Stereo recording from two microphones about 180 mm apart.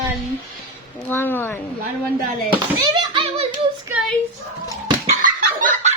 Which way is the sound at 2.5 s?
25° right (ahead or behind).